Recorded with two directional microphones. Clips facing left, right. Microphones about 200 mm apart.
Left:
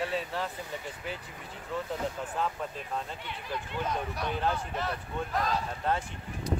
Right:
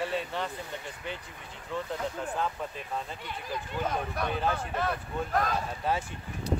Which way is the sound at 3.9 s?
55° right (ahead or behind).